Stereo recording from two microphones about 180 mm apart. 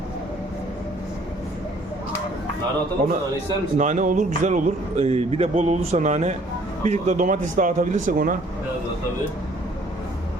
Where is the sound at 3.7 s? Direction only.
40° right (ahead or behind).